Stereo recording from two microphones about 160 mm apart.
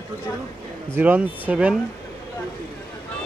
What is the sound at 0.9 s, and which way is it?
Speech, 10° right (ahead or behind).